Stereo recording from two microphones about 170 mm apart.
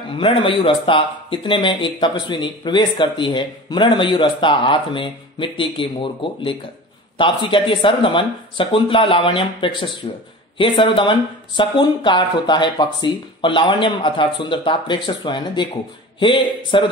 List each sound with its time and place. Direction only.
0.1 s speech: 30° left (ahead or behind)